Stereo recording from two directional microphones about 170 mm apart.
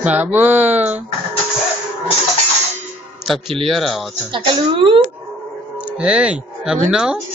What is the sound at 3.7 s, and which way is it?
Speech, centre (ahead or behind).